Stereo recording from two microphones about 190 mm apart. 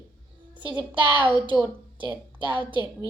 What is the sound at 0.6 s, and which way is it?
Speech, 25° right (ahead or behind).